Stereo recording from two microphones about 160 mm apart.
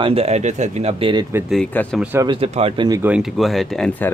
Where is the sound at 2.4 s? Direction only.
35° right (ahead or behind).